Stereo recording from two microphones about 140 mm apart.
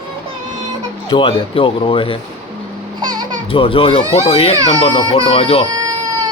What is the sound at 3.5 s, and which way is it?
A man's voice, 40° left (ahead or behind).